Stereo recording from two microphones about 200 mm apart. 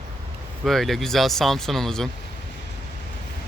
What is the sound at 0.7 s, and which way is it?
Speech, centre (ahead or behind).